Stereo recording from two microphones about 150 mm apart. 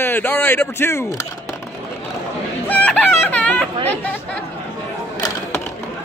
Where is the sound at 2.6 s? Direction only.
10° left (ahead or behind).